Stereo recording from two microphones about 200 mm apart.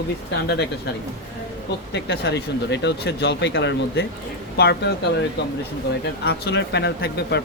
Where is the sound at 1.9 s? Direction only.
60° left (ahead or behind).